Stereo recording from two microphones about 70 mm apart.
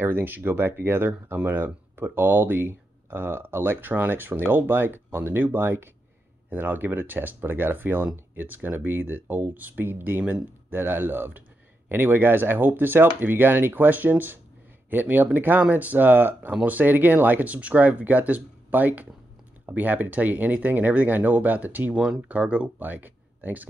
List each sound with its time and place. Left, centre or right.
0.0 s speech: right